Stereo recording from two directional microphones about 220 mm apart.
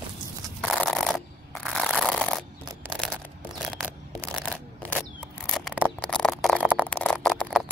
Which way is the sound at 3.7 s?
Centre (ahead or behind).